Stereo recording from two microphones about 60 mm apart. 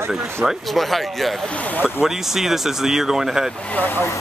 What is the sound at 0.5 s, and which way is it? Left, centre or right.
Speech, centre.